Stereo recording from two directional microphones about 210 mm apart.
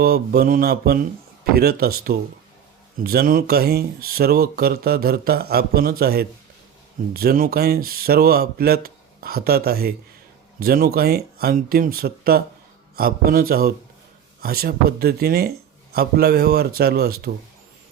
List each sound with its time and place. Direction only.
0.0 s speech: 45° right (ahead or behind)